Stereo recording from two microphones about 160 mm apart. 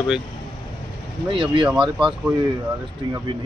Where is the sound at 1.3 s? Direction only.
30° right (ahead or behind).